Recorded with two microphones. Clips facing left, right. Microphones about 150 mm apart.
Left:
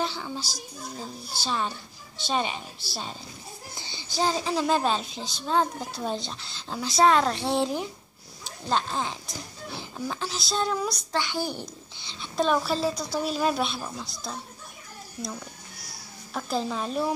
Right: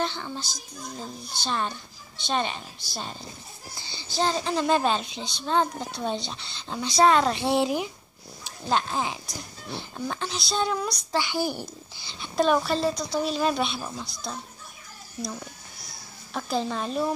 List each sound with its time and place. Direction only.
0.0 s a woman's voice: 5° left (ahead or behind)
3.7 s speech: 15° left (ahead or behind); by 9.2 s 10° right (ahead or behind)
9.3 s speech: centre (ahead or behind)
16.3 s speech: centre (ahead or behind)